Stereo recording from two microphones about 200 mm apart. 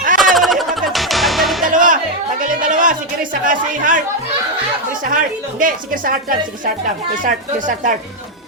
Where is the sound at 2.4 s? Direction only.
40° right (ahead or behind).